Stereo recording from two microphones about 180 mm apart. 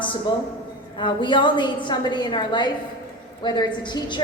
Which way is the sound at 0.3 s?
25° left (ahead or behind).